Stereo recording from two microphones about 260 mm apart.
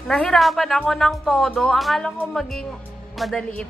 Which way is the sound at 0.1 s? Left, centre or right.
Centre.